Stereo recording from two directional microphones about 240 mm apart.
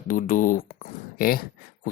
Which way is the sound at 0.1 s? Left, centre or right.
Left.